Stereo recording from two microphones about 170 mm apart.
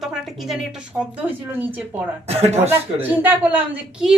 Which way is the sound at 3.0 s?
10° right (ahead or behind).